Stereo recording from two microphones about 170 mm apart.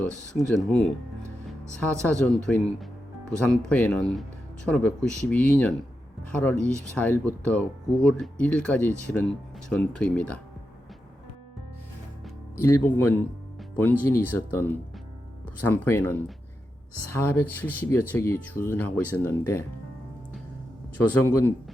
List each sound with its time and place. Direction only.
0.3 s speech: 5° left (ahead or behind)
12.6 s speech: 15° left (ahead or behind)
21.0 s speech: 10° left (ahead or behind)